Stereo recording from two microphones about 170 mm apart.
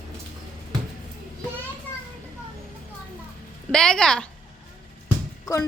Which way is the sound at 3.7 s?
5° left (ahead or behind).